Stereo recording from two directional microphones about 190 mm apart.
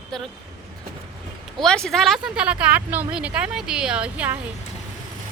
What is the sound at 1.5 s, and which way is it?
Speech, 5° left (ahead or behind).